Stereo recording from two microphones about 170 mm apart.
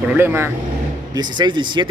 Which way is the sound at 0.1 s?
15° right (ahead or behind).